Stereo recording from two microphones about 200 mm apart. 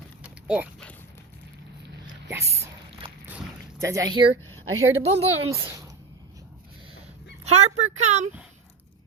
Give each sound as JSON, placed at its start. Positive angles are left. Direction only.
{"t": 0.2, "sound": "a sound", "side_deg": -5}
{"t": 3.2, "sound": "boat", "side_deg": -10}
{"t": 4.6, "sound": "a woman's voice", "side_deg": -90}
{"t": 5.0, "sound": "speech", "side_deg": -30}
{"t": 7.4, "sound": "speech", "side_deg": -35}